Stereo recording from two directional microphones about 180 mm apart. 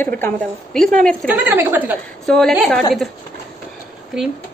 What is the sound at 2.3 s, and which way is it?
Speech, 5° left (ahead or behind).